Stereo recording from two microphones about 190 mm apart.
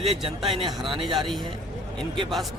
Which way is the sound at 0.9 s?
25° right (ahead or behind).